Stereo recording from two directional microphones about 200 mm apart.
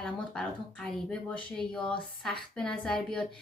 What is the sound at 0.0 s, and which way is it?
A woman's voice, 5° left (ahead or behind).